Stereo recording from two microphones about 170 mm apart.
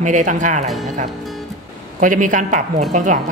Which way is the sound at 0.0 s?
45° right (ahead or behind).